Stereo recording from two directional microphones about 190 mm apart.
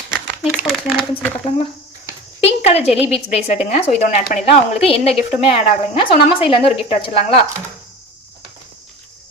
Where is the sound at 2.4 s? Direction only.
35° left (ahead or behind).